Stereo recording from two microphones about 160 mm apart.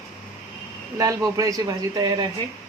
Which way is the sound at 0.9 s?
20° right (ahead or behind).